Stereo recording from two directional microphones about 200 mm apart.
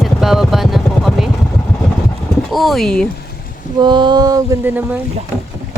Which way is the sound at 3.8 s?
25° right (ahead or behind).